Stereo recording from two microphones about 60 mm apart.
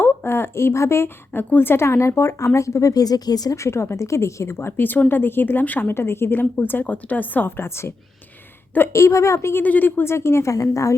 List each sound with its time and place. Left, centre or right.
0.0 s a sound: left
1.3 s speech: left
3.6 s speech: left
4.5 s a woman's voice: left
5.9 s a woman's voice: left
8.9 s a woman's voice: left
9.6 s speech: left
10.5 s a woman's voice: left